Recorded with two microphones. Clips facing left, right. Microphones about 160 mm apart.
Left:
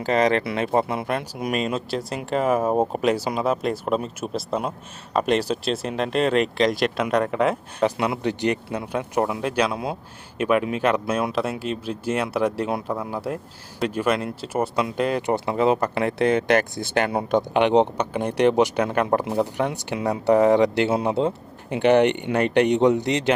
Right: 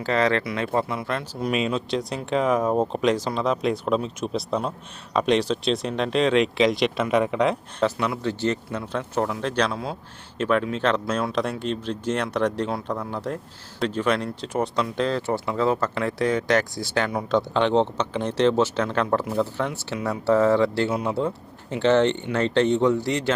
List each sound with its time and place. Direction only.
0.0 s speech: 20° left (ahead or behind)
1.5 s speech: centre (ahead or behind)
7.9 s speech: 15° left (ahead or behind)
9.7 s speech: 20° left (ahead or behind)
16.1 s speech: 60° left (ahead or behind)
17.3 s speech: 15° left (ahead or behind)